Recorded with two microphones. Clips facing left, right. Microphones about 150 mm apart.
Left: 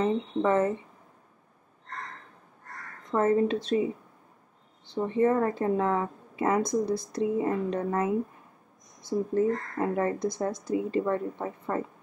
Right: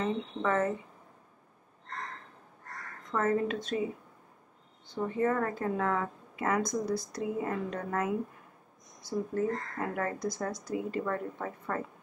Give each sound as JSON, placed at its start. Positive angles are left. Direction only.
{"t": 0.0, "sound": "a woman's voice", "side_deg": 25}
{"t": 3.1, "sound": "a woman's voice", "side_deg": 30}
{"t": 4.8, "sound": "a woman's voice", "side_deg": 30}